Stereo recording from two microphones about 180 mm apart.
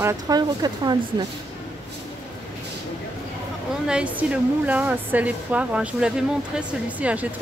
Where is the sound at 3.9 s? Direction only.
5° right (ahead or behind).